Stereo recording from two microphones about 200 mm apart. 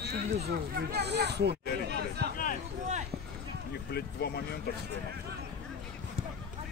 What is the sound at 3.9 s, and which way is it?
Speech, 55° left (ahead or behind).